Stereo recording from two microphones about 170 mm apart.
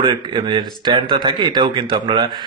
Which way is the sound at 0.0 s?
30° right (ahead or behind).